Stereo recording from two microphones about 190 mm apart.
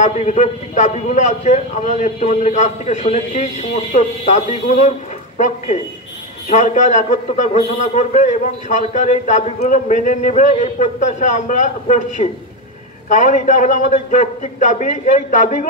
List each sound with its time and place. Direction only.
0.0 s a man's voice: 35° left (ahead or behind)
6.5 s a man's voice: 40° left (ahead or behind)